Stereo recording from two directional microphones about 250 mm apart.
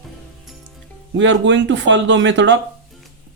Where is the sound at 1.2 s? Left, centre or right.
Right.